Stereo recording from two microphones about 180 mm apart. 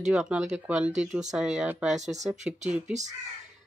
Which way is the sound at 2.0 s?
40° right (ahead or behind).